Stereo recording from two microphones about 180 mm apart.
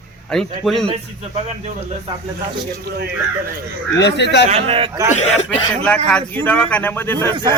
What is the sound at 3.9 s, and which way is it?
Speech, 75° left (ahead or behind).